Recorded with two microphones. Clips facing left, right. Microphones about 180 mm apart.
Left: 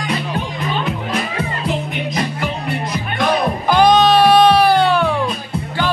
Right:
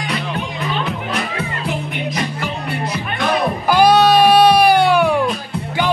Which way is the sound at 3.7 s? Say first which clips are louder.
Even; 10° right (ahead or behind).